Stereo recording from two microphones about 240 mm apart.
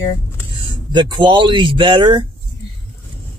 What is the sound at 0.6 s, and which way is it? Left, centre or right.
Speech, centre.